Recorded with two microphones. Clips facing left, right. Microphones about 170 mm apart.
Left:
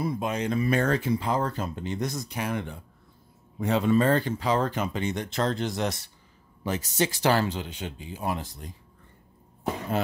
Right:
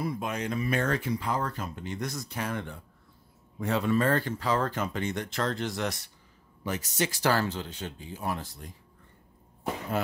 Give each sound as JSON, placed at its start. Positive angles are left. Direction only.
{"t": 0.0, "sound": "speech", "side_deg": 25}
{"t": 0.7, "sound": "speech", "side_deg": 35}